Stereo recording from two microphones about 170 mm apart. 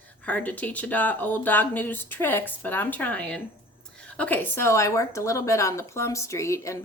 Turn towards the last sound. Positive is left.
turn(degrees=15)  # may be behind; listen again after turning